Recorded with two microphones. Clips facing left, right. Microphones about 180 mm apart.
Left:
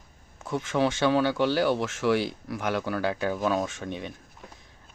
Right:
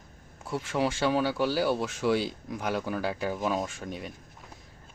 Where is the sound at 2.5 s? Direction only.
90° left.